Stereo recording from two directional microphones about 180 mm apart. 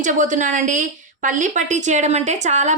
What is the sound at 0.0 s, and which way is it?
A woman's voice, 45° right (ahead or behind).